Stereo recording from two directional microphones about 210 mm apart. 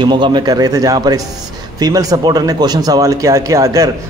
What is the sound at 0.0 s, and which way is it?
A man's voice, 20° right (ahead or behind).